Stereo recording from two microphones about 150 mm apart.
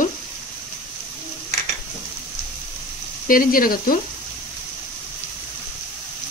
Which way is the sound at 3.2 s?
70° left (ahead or behind).